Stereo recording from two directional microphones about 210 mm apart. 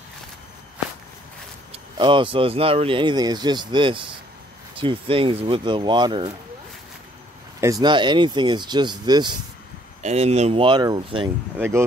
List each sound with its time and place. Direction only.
1.7 s speech: 25° right (ahead or behind)
7.6 s speech: 20° right (ahead or behind)
10.0 s speech: 30° right (ahead or behind)
11.5 s speech: 10° right (ahead or behind)